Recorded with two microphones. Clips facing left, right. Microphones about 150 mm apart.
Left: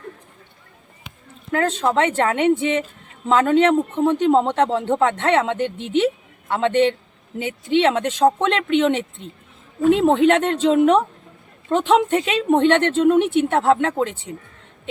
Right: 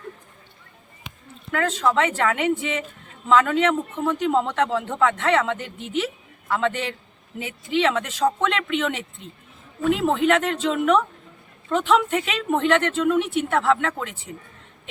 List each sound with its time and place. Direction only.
1.5 s a man's voice: 35° left (ahead or behind)